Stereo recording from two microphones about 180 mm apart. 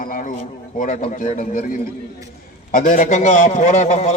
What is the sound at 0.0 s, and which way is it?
A man's voice, 50° left (ahead or behind).